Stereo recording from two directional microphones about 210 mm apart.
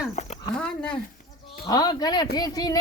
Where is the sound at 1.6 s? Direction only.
20° left (ahead or behind).